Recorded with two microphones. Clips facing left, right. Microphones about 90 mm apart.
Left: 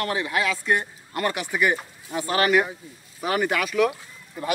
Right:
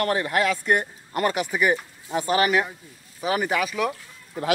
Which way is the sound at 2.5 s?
Centre (ahead or behind).